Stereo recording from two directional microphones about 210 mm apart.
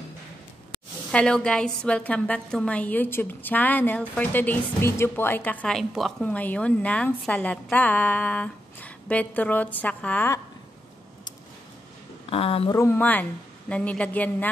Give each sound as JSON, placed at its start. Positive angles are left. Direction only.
{"t": 1.1, "sound": "a woman's voice", "side_deg": 5}
{"t": 12.3, "sound": "speech", "side_deg": 25}
{"t": 12.7, "sound": "a woman's voice", "side_deg": 10}